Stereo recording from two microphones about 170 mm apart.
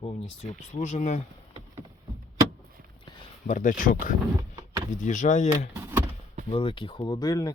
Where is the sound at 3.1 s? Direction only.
25° left (ahead or behind).